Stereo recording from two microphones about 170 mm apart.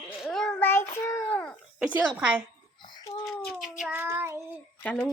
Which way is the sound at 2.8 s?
30° left (ahead or behind).